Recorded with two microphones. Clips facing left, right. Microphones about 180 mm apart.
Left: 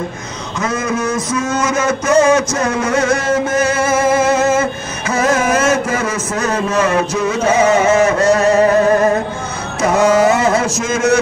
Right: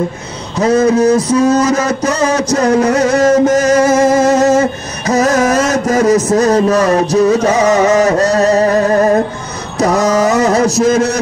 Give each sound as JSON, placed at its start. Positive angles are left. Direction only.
{"t": 0.6, "sound": "speech", "side_deg": -35}
{"t": 9.8, "sound": "speech", "side_deg": -40}